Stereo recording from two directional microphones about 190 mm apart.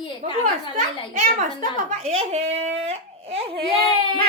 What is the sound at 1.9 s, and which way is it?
Speech, 35° right (ahead or behind).